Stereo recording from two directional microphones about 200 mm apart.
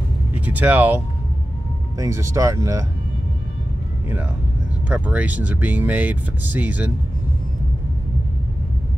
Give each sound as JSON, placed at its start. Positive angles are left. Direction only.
{"t": 0.3, "sound": "speech", "side_deg": -10}
{"t": 4.8, "sound": "speech", "side_deg": -5}